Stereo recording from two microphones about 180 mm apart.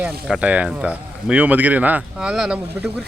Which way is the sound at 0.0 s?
5° right (ahead or behind).